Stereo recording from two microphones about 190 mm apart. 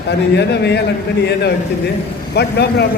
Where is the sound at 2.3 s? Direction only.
60° left (ahead or behind).